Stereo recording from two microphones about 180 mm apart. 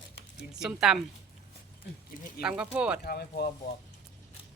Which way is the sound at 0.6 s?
5° right (ahead or behind).